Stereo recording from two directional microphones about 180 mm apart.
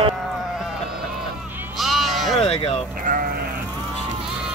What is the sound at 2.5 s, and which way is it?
Sheep, 35° left (ahead or behind).